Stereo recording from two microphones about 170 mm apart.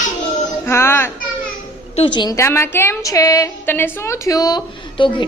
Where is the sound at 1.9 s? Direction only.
30° left (ahead or behind).